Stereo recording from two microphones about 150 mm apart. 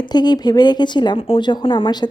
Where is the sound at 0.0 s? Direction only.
30° left (ahead or behind).